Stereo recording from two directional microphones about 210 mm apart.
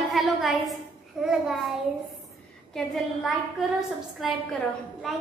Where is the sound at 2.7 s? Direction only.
Centre (ahead or behind).